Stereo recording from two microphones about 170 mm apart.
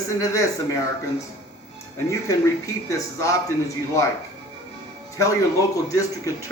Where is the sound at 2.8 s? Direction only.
20° left (ahead or behind).